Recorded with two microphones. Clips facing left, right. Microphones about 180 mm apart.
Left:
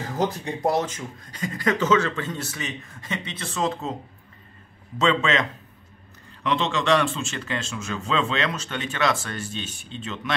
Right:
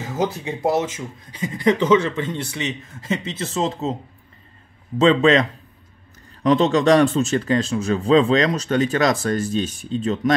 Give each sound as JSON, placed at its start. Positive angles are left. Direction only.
{"t": 0.0, "sound": "speech", "side_deg": -5}
{"t": 1.9, "sound": "a man's voice", "side_deg": -25}
{"t": 4.9, "sound": "speech", "side_deg": -35}